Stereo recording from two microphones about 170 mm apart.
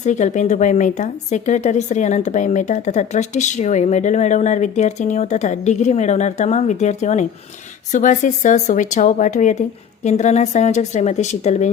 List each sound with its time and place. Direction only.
0.0 s speech: 45° left (ahead or behind)